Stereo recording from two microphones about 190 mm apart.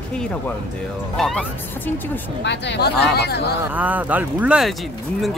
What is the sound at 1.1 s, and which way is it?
Speech, centre (ahead or behind).